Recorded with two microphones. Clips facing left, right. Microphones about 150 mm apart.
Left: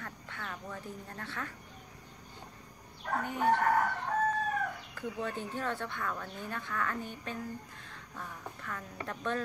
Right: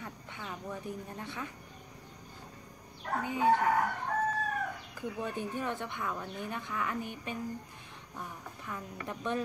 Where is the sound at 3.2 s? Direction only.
10° right (ahead or behind).